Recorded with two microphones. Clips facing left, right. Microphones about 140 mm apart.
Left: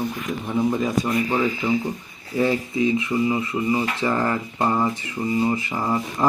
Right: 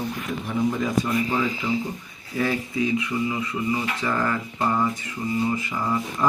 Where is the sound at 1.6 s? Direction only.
35° left (ahead or behind).